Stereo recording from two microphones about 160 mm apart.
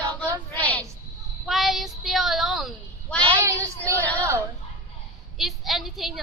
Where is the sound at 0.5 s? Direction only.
10° left (ahead or behind).